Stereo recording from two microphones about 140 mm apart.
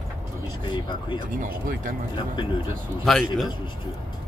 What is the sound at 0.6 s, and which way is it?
Speech, 35° left (ahead or behind).